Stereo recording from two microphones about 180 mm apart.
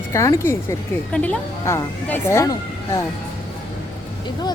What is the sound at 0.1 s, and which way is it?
Speech, 15° left (ahead or behind).